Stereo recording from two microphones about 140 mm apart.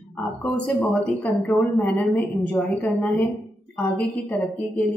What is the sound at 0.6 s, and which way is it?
A woman's voice, 10° left (ahead or behind).